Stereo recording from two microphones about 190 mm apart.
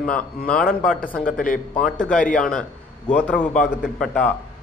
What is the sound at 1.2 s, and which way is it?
Speech, 45° left (ahead or behind).